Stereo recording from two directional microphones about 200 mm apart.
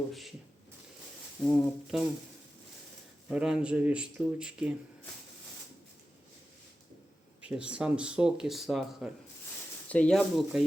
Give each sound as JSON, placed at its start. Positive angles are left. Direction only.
{"t": 0.1, "sound": "speech", "side_deg": 0}
{"t": 1.5, "sound": "speech", "side_deg": 0}
{"t": 3.2, "sound": "speech", "side_deg": -5}
{"t": 7.4, "sound": "speech", "side_deg": -5}